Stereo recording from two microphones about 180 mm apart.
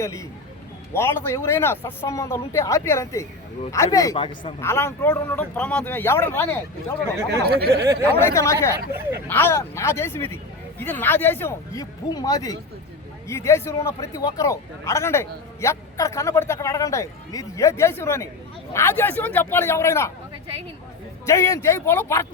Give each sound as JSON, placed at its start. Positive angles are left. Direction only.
{"t": 0.0, "sound": "a man's voice", "side_deg": 15}
{"t": 7.4, "sound": "speech", "side_deg": -60}
{"t": 8.2, "sound": "a man's voice", "side_deg": 15}
{"t": 8.9, "sound": "speech", "side_deg": -15}
{"t": 9.2, "sound": "a man's voice", "side_deg": 10}
{"t": 21.2, "sound": "a man's voice", "side_deg": 15}